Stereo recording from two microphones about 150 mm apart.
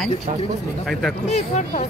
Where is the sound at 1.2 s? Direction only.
50° left (ahead or behind).